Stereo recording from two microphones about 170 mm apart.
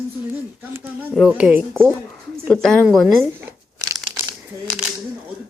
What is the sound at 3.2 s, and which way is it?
Crumpling, 15° right (ahead or behind).